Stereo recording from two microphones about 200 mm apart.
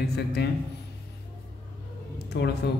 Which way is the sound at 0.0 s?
55° left (ahead or behind).